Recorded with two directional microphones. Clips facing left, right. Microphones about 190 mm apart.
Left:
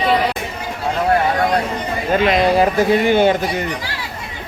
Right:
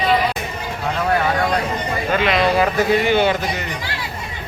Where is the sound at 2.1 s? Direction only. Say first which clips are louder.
Left 3 dB; 40° left (ahead or behind).